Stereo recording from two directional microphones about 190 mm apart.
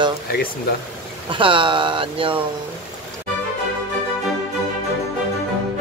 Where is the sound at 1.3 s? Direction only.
25° right (ahead or behind).